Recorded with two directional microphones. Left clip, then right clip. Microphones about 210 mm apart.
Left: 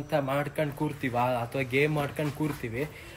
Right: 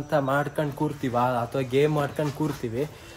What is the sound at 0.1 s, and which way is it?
Speech, 20° right (ahead or behind).